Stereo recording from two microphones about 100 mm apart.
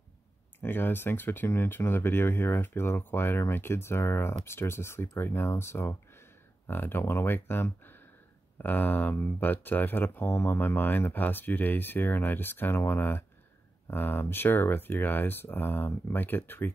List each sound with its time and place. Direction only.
0.6 s speech: 20° left (ahead or behind)